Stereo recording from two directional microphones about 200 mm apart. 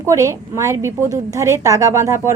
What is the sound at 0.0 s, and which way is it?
A woman's voice, 15° right (ahead or behind).